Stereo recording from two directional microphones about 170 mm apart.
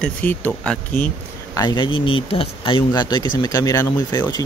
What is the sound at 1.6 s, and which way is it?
Speech, 25° left (ahead or behind).